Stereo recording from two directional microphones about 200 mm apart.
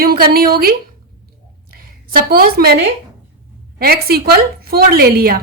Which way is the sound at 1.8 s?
45° right (ahead or behind).